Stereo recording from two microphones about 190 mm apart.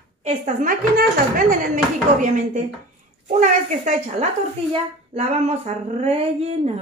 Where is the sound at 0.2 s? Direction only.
40° right (ahead or behind).